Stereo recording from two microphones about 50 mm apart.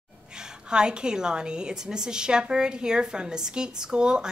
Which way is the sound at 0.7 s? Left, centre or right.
Centre.